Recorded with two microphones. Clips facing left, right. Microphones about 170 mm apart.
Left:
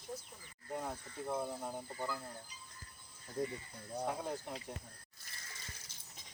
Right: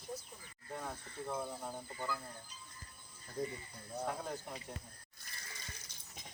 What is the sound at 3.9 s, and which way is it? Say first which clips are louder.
Speech: left 1 dB; 10° left (ahead or behind).